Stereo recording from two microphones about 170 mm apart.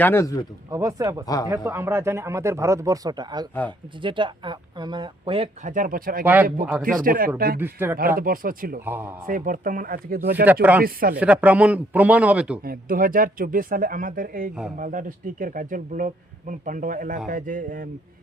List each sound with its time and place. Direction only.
0.0 s speech: 15° left (ahead or behind)
0.7 s speech: 20° right (ahead or behind)
5.6 s speech: 50° right (ahead or behind)
6.2 s speech: 10° right (ahead or behind)
7.0 s speech: 55° right (ahead or behind)
7.6 s speech: 10° right (ahead or behind)
8.2 s speech: 55° right (ahead or behind)
8.8 s speech: 10° right (ahead or behind)
9.2 s speech: 55° right (ahead or behind)
10.4 s speech: 10° right (ahead or behind)
10.8 s speech: 60° right (ahead or behind)
11.2 s speech: 10° right (ahead or behind)
12.6 s speech: 55° right (ahead or behind)